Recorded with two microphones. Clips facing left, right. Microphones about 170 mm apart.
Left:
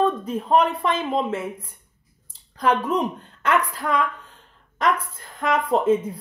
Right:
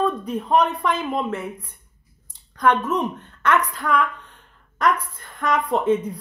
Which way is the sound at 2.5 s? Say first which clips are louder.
Right 1 dB; 30° left (ahead or behind).